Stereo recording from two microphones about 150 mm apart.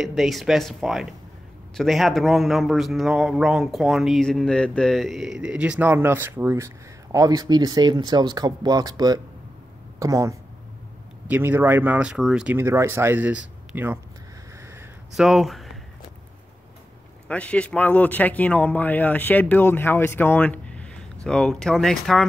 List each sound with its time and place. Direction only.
0.0 s a man's voice: centre (ahead or behind)
15.1 s a man's voice: centre (ahead or behind)
17.3 s speech: 10° left (ahead or behind)